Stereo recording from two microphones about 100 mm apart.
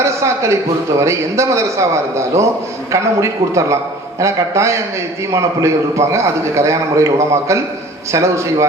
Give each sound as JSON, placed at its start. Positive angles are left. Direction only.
{"t": 0.0, "sound": "a man's voice", "side_deg": -30}